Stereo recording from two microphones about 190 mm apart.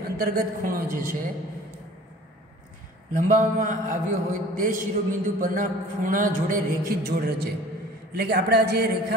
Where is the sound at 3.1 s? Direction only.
40° right (ahead or behind).